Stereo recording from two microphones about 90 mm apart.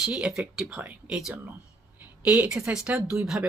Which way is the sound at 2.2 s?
15° right (ahead or behind).